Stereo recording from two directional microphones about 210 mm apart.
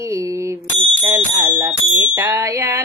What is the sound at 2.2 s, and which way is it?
Music, 15° right (ahead or behind).